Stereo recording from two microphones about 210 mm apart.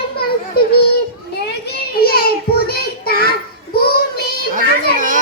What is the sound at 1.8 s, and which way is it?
Child singing, 45° left (ahead or behind).